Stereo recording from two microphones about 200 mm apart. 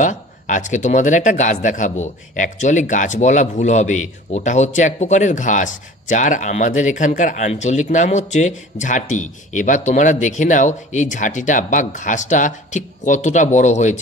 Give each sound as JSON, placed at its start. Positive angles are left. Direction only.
{"t": 0.0, "sound": "speech", "side_deg": 40}